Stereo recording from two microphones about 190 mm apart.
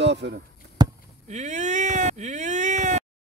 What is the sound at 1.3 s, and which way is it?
Speech, 40° right (ahead or behind).